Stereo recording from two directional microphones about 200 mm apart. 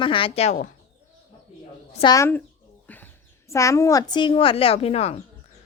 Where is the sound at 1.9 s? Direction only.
20° left (ahead or behind).